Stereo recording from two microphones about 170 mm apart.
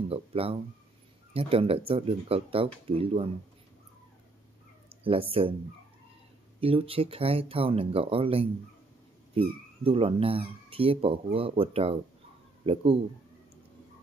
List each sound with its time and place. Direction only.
0.1 s speech: 35° right (ahead or behind)
5.0 s speech: 35° right (ahead or behind)
6.6 s speech: 35° right (ahead or behind)